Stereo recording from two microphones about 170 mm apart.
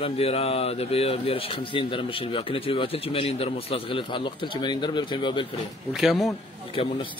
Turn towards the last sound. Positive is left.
turn(degrees=35)  # may be behind; listen again after turning